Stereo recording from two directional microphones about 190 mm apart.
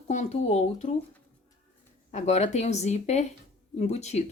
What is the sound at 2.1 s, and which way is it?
Speech, 35° left (ahead or behind).